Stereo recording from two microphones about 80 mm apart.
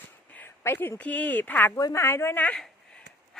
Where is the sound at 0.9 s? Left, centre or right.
Centre.